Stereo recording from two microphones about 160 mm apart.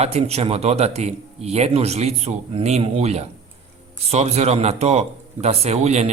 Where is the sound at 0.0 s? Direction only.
40° right (ahead or behind).